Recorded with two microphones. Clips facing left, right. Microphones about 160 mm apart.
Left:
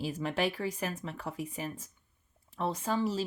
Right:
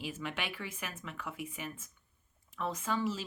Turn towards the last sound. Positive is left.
turn(degrees=35)  # may be behind; listen again after turning